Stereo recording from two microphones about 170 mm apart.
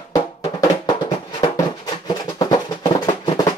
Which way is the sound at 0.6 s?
25° left (ahead or behind).